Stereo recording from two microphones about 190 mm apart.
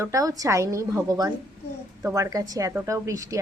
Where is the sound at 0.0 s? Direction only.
15° right (ahead or behind).